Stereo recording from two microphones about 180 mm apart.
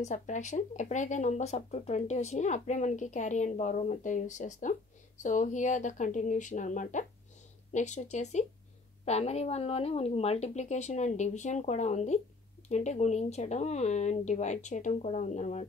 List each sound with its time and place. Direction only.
0.0 s speech: 40° left (ahead or behind)